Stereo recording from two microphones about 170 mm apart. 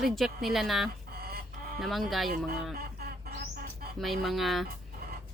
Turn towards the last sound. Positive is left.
turn(degrees=0)  # may be behind; listen again after turning